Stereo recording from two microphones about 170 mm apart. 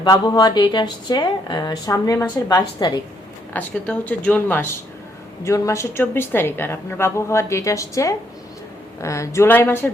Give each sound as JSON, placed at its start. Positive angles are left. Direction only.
{"t": 0.0, "sound": "a woman's voice", "side_deg": 25}
{"t": 3.5, "sound": "a woman's voice", "side_deg": 10}